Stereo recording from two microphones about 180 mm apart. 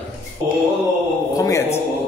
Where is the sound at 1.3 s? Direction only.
20° left (ahead or behind).